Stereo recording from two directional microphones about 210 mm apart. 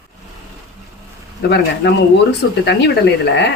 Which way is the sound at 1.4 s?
50° left (ahead or behind).